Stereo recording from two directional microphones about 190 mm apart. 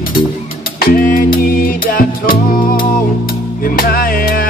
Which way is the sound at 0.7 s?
50° left (ahead or behind).